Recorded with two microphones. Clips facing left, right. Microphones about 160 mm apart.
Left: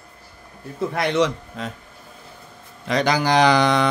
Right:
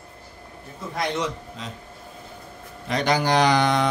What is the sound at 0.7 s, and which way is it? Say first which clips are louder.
Speech: left 7 dB; 65° left (ahead or behind).